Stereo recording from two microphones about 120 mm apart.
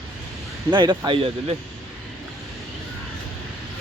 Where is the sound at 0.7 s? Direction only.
40° right (ahead or behind).